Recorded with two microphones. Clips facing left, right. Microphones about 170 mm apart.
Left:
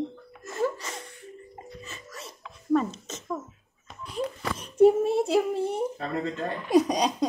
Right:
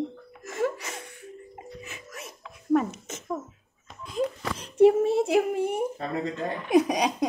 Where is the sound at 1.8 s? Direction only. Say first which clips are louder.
Right 1 dB; 15° right (ahead or behind).